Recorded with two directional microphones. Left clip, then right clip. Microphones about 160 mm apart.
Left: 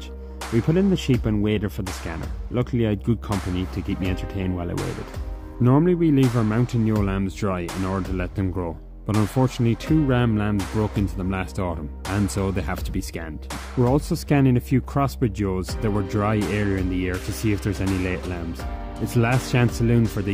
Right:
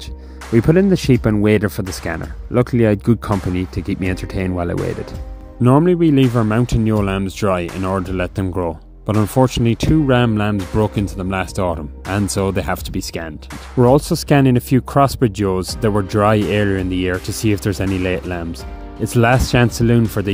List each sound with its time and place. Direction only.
0.6 s speech: 30° right (ahead or behind)
5.6 s speech: 45° right (ahead or behind)